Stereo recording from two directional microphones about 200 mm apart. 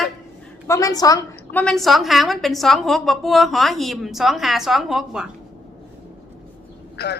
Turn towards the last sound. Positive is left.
turn(degrees=50)  # may be behind; listen again after turning